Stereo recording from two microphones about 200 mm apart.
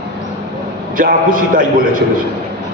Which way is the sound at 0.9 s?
45° right (ahead or behind).